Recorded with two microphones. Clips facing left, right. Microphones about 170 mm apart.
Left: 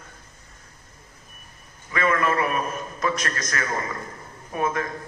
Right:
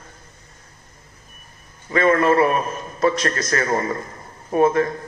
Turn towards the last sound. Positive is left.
turn(degrees=-35)  # may be behind; listen again after turning